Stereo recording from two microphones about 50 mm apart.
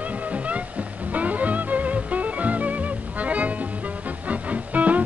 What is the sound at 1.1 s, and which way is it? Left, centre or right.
Music, right.